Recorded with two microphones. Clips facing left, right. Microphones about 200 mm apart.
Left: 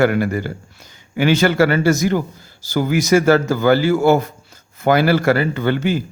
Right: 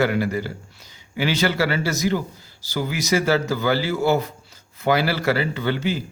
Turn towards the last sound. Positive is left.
turn(degrees=50)  # may be behind; listen again after turning